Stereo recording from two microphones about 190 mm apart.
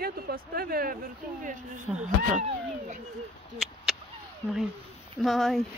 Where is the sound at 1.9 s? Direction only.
5° right (ahead or behind).